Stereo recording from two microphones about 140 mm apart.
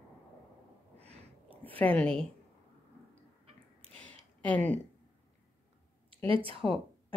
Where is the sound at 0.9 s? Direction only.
50° right (ahead or behind).